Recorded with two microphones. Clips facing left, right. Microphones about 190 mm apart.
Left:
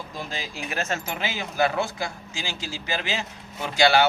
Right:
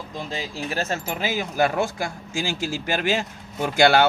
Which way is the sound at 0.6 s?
35° right (ahead or behind).